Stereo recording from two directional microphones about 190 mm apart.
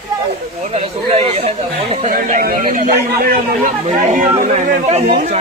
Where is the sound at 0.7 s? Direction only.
30° right (ahead or behind).